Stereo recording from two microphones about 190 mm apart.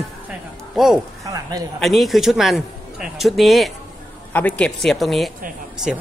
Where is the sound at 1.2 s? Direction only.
20° right (ahead or behind).